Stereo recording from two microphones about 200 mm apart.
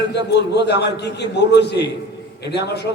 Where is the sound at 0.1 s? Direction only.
55° left (ahead or behind).